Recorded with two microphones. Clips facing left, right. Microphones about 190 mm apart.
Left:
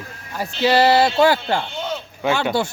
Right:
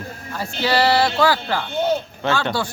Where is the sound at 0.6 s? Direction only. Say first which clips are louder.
Left 3 dB; 20° left (ahead or behind).